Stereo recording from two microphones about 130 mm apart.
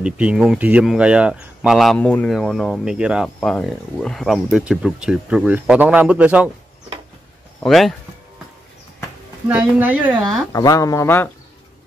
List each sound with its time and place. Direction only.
0.0 s speech: 10° right (ahead or behind)
3.3 s speech: 10° left (ahead or behind); by 6.5 s 10° right (ahead or behind)
7.6 s speech: centre (ahead or behind)
9.5 s speech: 10° right (ahead or behind)
10.5 s speech: 25° left (ahead or behind)